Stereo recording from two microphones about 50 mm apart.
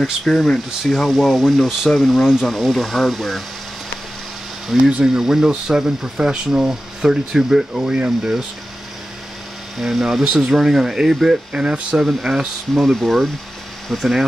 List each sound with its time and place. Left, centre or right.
0.2 s speech: centre
4.7 s speech: centre
5.0 s speech: centre
7.8 s speech: centre
9.8 s speech: centre
11.5 s speech: right; by 14.1 s centre